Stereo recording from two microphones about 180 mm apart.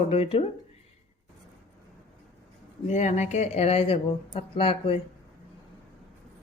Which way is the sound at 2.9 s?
40° left (ahead or behind).